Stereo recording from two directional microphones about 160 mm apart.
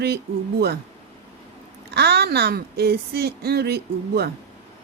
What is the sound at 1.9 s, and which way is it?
A woman's voice, 90° right.